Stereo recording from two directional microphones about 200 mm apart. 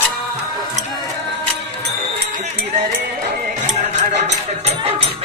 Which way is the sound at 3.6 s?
35° right (ahead or behind).